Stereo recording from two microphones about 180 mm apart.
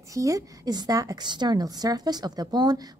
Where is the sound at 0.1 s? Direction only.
20° right (ahead or behind).